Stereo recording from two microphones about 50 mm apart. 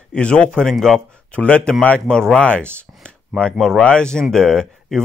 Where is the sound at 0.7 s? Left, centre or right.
Centre.